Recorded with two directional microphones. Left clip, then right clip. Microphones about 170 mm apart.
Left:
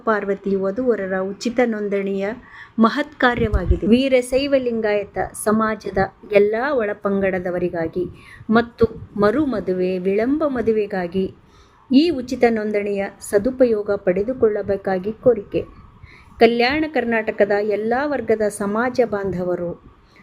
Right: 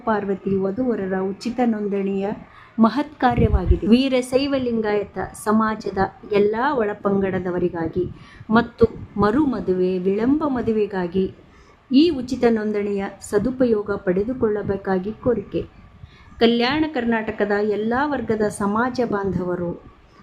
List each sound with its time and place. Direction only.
0.0 s a woman's voice: 15° left (ahead or behind)